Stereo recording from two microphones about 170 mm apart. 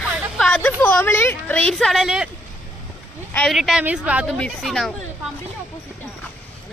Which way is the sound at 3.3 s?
Centre (ahead or behind).